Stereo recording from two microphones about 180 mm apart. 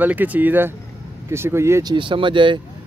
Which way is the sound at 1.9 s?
25° right (ahead or behind).